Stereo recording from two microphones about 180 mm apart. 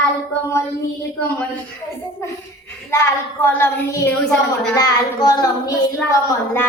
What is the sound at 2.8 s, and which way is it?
A woman's voice, 15° left (ahead or behind).